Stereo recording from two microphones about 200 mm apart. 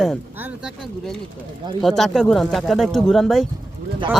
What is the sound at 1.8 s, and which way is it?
Speech, centre (ahead or behind).